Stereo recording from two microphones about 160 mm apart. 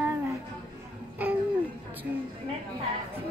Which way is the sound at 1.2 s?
10° right (ahead or behind).